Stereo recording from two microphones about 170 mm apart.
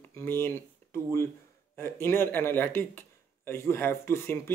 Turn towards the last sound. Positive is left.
turn(degrees=15)  # may be behind; listen again after turning